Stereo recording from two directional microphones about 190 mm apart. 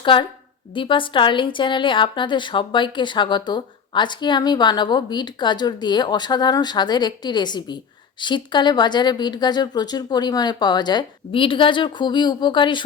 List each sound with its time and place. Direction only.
0.0 s a woman's voice: 25° left (ahead or behind)